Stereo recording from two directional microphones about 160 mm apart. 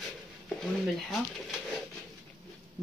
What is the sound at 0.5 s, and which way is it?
Speech, centre (ahead or behind).